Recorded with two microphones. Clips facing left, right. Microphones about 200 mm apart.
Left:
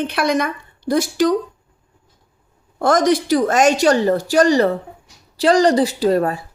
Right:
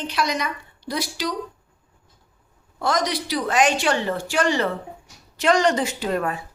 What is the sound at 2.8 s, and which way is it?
A woman's voice, 50° left (ahead or behind).